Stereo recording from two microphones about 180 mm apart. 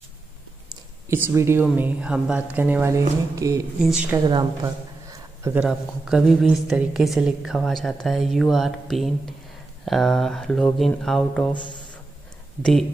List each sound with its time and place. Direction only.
1.0 s speech: 15° right (ahead or behind)
3.9 s speech: 5° right (ahead or behind)
4.2 s a woman's voice: 25° right (ahead or behind)
5.0 s speech: 10° right (ahead or behind); by 11.6 s 5° left (ahead or behind)